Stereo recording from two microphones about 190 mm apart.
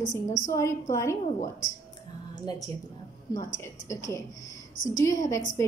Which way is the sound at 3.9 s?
15° left (ahead or behind).